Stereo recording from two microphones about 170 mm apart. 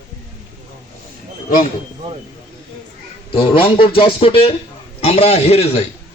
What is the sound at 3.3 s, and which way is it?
A man's voice, 30° left (ahead or behind).